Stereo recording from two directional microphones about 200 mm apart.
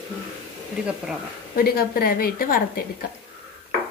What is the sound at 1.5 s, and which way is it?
Speech, 50° left (ahead or behind).